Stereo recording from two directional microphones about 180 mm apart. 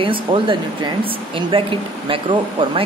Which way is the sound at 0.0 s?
30° right (ahead or behind).